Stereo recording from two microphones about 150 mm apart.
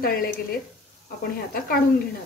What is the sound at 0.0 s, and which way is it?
Speech, 85° left.